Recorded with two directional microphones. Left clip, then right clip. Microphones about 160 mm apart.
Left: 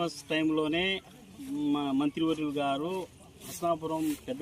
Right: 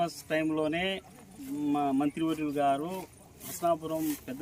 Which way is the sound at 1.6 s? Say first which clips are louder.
Right 1 dB; 10° right (ahead or behind).